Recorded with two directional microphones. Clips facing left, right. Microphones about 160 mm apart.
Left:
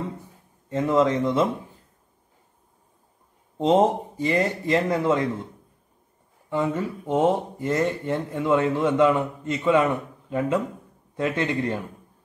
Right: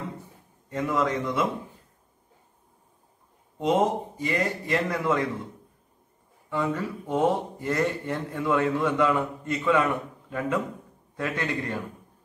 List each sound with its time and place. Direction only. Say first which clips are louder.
0.7 s speech: left 6 dB; 25° left (ahead or behind)
3.5 s speech: left 4 dB; 30° left (ahead or behind)
6.5 s speech: left 3 dB; 20° left (ahead or behind)